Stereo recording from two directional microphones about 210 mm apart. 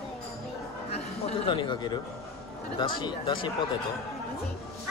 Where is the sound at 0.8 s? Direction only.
30° left (ahead or behind).